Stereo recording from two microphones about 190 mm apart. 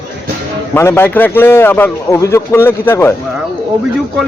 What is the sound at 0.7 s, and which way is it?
A man's voice, 10° left (ahead or behind).